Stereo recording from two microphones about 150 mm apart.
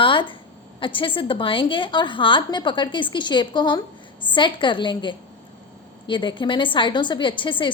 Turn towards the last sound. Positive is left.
turn(degrees=35)  # may be behind; listen again after turning